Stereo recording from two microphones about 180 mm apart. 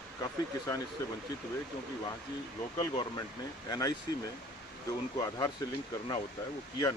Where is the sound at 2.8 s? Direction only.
25° left (ahead or behind).